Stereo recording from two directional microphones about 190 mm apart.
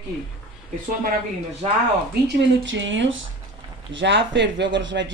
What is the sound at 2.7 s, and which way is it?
Speech, 75° right (ahead or behind).